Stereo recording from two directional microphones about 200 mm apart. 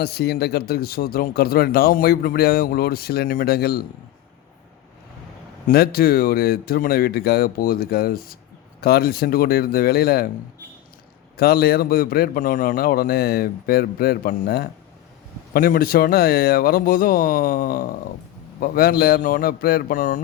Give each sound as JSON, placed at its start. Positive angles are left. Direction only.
{"t": 0.0, "sound": "speech", "side_deg": 50}
{"t": 5.6, "sound": "speech", "side_deg": 50}
{"t": 11.3, "sound": "speech", "side_deg": 50}